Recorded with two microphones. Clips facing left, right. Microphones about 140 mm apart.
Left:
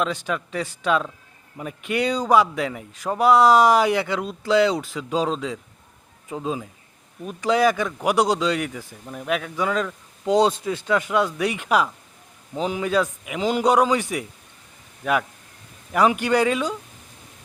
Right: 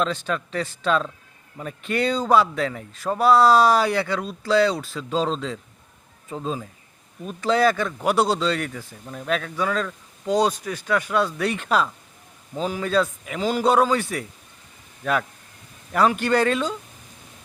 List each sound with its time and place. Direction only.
0.0 s speech: 15° left (ahead or behind)
15.9 s speech: 15° left (ahead or behind)